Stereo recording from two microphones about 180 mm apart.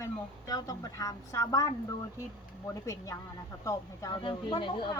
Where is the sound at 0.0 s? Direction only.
20° left (ahead or behind).